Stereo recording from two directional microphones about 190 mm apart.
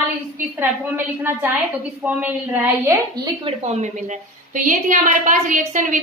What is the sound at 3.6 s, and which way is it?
A woman's voice, 35° right (ahead or behind).